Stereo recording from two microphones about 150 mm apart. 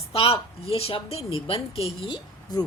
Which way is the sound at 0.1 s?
40° left (ahead or behind).